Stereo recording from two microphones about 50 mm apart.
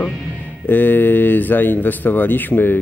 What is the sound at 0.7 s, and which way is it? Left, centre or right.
Speech, left.